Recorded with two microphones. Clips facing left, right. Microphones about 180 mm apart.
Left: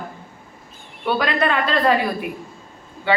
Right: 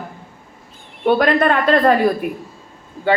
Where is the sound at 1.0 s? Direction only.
50° right (ahead or behind).